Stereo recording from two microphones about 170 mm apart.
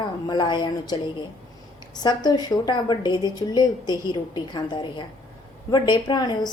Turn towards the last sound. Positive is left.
turn(degrees=25)  # may be behind; listen again after turning